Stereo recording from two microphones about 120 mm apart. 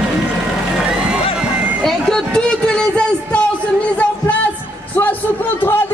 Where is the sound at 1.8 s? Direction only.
5° left (ahead or behind).